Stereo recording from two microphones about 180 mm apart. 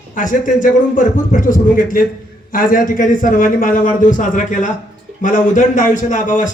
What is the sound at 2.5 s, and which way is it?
A man's voice, 50° left (ahead or behind).